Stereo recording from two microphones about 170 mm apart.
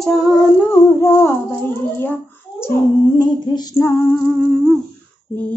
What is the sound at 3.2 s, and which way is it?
Female singing, 20° left (ahead or behind).